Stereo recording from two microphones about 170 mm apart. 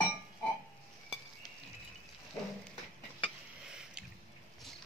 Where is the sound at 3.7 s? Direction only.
5° right (ahead or behind).